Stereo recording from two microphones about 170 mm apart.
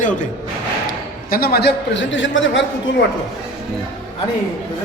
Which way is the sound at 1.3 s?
65° left (ahead or behind).